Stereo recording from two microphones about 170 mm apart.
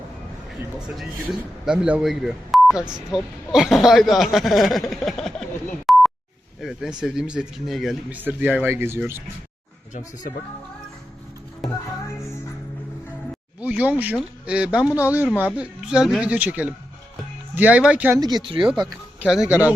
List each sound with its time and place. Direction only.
0.8 s a man's voice: centre (ahead or behind)
5.9 s a sound: centre (ahead or behind)
6.6 s a man's voice: centre (ahead or behind)
13.6 s speech: 10° right (ahead or behind)
18.2 s speech: 25° right (ahead or behind)
19.2 s a man's voice: 5° right (ahead or behind)